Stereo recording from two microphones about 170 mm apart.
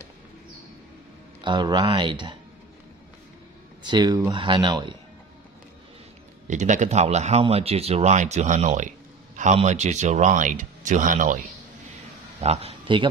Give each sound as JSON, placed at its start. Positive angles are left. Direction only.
{"t": 1.4, "sound": "speech", "side_deg": -25}
{"t": 3.9, "sound": "speech", "side_deg": -25}
{"t": 6.4, "sound": "speech", "side_deg": -45}
{"t": 12.4, "sound": "a man's voice", "side_deg": -40}